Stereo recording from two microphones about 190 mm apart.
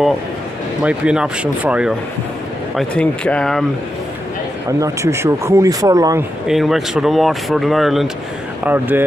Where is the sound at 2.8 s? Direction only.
5° left (ahead or behind).